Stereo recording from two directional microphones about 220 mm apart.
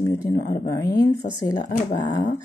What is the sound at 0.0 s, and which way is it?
Speech, 15° left (ahead or behind).